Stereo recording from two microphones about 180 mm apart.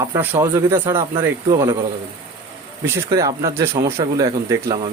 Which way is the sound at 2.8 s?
15° right (ahead or behind).